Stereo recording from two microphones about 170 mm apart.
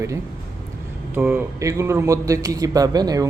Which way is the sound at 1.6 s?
20° right (ahead or behind).